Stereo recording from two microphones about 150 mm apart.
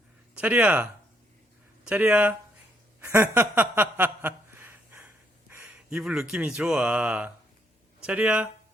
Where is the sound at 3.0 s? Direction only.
15° right (ahead or behind).